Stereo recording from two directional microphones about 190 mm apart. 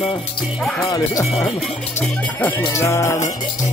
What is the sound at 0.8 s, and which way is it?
Music, 20° left (ahead or behind).